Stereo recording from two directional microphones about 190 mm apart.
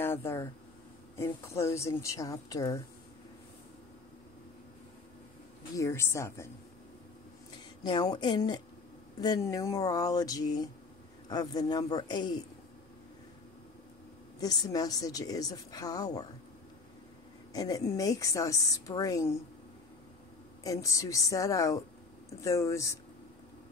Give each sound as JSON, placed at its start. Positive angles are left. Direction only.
{"t": 0.0, "sound": "a woman's voice", "side_deg": 15}
{"t": 5.8, "sound": "a woman's voice", "side_deg": 15}
{"t": 7.8, "sound": "a woman's voice", "side_deg": 20}
{"t": 14.4, "sound": "a woman's voice", "side_deg": 20}
{"t": 17.5, "sound": "a woman's voice", "side_deg": 20}
{"t": 20.6, "sound": "a woman's voice", "side_deg": 15}